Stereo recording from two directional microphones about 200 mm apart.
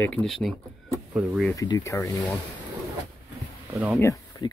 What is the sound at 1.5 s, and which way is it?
Speech, 20° left (ahead or behind).